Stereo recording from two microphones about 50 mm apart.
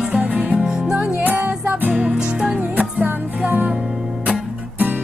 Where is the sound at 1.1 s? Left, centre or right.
Right.